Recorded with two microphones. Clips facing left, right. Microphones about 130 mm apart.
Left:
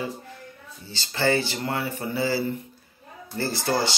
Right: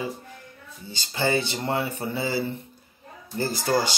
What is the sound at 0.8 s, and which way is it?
Speech, 15° right (ahead or behind).